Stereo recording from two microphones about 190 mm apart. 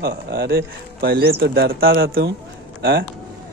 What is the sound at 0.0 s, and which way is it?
Speech, 55° right (ahead or behind).